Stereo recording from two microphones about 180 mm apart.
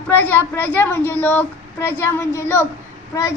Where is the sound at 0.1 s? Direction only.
10° left (ahead or behind).